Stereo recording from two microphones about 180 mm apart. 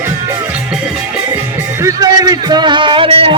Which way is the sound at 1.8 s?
20° right (ahead or behind).